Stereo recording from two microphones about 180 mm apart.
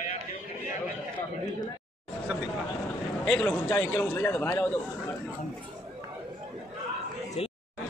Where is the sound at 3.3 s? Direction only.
10° left (ahead or behind).